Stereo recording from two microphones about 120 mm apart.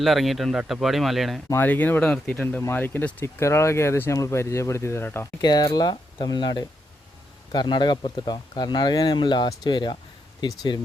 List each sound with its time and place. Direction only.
0.0 s speech: centre (ahead or behind)
1.5 s speech: 15° left (ahead or behind)
5.4 s speech: 35° left (ahead or behind)